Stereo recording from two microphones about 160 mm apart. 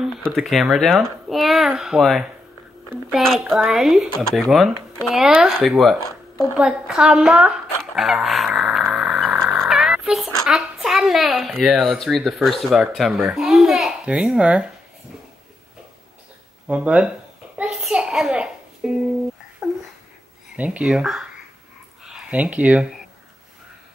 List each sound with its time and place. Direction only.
0.0 s speech: centre (ahead or behind)
6.0 s a sound: 20° left (ahead or behind)
6.6 s zipper: 5° right (ahead or behind)
9.4 s oink: centre (ahead or behind)
10.4 s speech: centre (ahead or behind)
16.6 s speech: 10° right (ahead or behind)
17.6 s a sound: 5° right (ahead or behind)
20.5 s speech: 10° right (ahead or behind)